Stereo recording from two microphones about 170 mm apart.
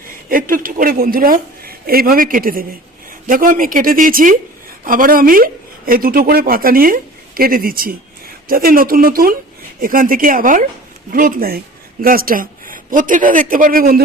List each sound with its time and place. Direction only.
0.3 s speech: 55° right (ahead or behind)